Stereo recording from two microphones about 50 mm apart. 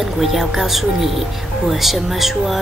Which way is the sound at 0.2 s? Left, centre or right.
Centre.